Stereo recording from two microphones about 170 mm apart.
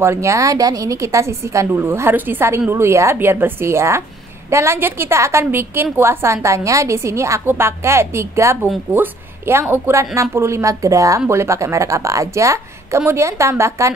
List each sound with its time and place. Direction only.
0.0 s a woman's voice: 15° right (ahead or behind)